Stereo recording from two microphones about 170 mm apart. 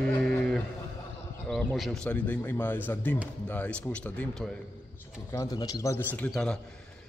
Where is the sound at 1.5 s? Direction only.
5° left (ahead or behind).